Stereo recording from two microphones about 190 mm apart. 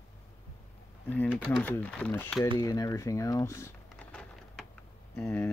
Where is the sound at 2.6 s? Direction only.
20° left (ahead or behind).